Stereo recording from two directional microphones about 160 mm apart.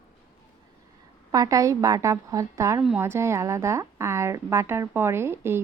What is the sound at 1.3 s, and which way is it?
A woman's voice, 20° right (ahead or behind).